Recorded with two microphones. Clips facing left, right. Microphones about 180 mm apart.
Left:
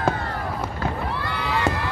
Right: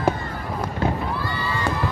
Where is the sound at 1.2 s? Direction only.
70° left (ahead or behind).